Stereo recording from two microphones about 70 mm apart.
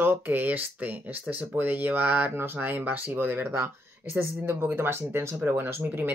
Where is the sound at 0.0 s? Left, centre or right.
Right.